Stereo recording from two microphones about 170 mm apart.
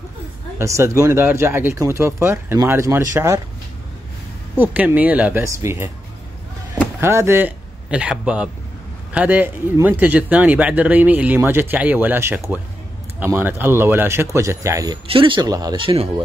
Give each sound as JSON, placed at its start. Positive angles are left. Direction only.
{"t": 0.6, "sound": "a man's voice", "side_deg": -15}
{"t": 4.6, "sound": "a man's voice", "side_deg": -10}
{"t": 7.0, "sound": "a man's voice", "side_deg": -15}
{"t": 15.0, "sound": "speech", "side_deg": -30}